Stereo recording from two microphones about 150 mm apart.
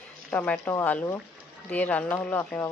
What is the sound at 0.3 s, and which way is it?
A woman's voice, 10° left (ahead or behind).